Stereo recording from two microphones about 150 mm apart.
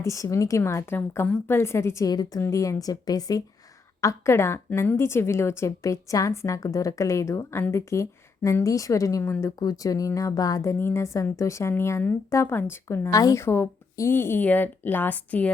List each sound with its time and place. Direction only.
0.0 s a woman's voice: 20° left (ahead or behind)